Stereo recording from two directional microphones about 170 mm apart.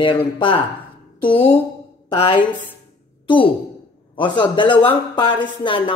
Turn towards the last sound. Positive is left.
turn(degrees=30)  # may be behind; listen again after turning